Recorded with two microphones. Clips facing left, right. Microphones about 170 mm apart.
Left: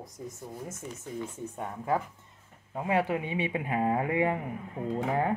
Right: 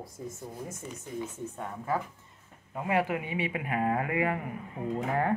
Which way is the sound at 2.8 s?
25° left (ahead or behind).